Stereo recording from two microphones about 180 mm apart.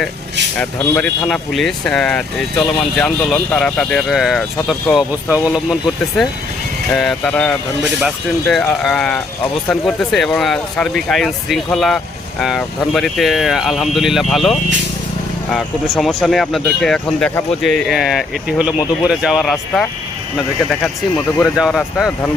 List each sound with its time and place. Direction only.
0.5 s speech: 5° left (ahead or behind)
6.9 s speech: centre (ahead or behind)